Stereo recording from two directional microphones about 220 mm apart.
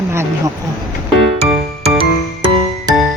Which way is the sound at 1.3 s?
25° right (ahead or behind).